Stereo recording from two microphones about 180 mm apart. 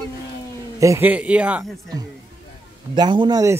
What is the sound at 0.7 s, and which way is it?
Speech, 15° right (ahead or behind).